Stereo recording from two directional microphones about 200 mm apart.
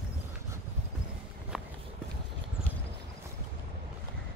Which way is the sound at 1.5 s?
5° right (ahead or behind).